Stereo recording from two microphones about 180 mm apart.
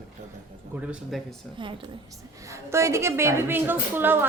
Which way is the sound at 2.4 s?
15° right (ahead or behind).